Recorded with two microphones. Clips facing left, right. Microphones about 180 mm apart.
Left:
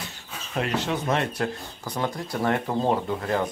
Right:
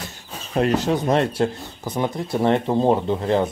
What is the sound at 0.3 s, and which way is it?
Speech, 40° right (ahead or behind).